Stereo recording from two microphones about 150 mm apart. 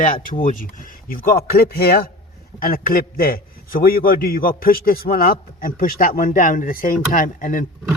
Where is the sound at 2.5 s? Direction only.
80° left.